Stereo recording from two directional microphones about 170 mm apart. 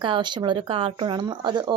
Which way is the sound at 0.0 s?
30° right (ahead or behind).